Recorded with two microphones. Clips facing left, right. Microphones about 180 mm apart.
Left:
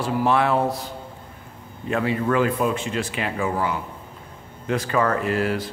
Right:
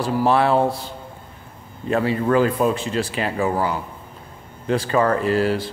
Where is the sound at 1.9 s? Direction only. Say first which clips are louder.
Right 3 dB; 35° right (ahead or behind).